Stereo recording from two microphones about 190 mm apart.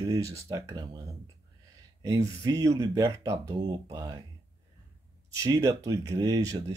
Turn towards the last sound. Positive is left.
turn(degrees=-15)  # may be behind; listen again after turning